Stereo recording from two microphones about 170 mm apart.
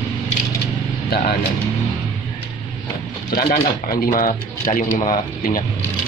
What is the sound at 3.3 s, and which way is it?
Speech, 60° left (ahead or behind).